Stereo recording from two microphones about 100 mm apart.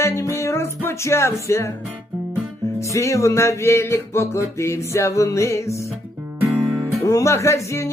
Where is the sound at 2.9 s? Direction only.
30° left (ahead or behind).